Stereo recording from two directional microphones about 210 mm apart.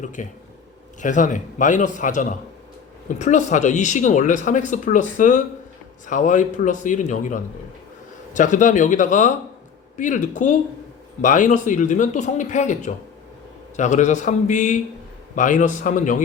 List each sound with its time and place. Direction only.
0.0 s speech: 35° left (ahead or behind)